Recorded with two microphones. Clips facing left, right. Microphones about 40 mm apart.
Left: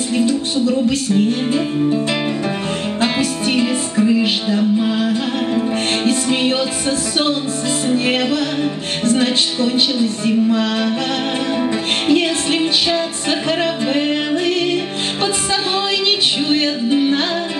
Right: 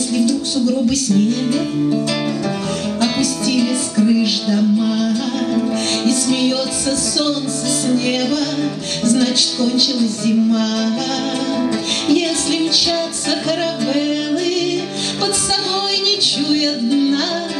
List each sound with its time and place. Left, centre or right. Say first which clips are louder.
0.2 s music: even; left
3.0 s music: even; left
9.0 s music: even; left
12.1 s music: even; left
16.4 s music: right 2 dB; left